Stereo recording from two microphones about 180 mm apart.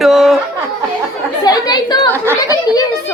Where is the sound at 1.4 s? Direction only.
20° left (ahead or behind).